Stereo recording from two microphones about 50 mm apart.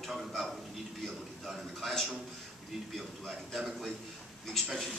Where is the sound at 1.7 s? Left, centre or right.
Centre.